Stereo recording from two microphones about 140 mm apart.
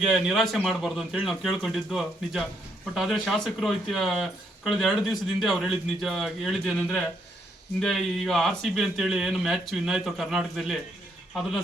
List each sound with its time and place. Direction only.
0.0 s speech: centre (ahead or behind)